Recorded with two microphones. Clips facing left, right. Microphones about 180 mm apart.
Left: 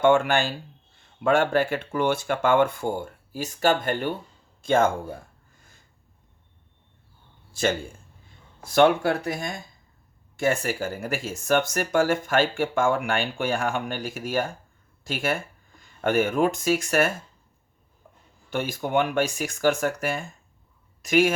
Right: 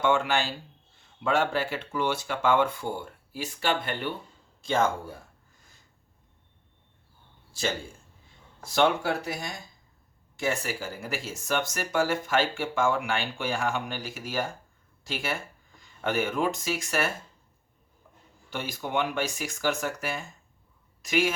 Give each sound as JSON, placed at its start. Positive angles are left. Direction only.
{"t": 0.0, "sound": "speech", "side_deg": 50}
{"t": 7.5, "sound": "speech", "side_deg": 55}
{"t": 18.5, "sound": "speech", "side_deg": 50}